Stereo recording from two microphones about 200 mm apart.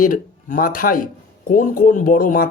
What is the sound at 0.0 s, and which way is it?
Speech, 40° left (ahead or behind).